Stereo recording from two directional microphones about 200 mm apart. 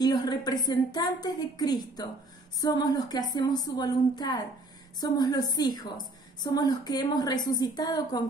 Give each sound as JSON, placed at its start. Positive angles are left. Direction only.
{"t": 0.0, "sound": "a woman's voice", "side_deg": 20}